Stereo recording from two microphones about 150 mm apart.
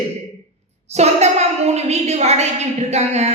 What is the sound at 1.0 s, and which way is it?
A woman's voice, 45° right (ahead or behind).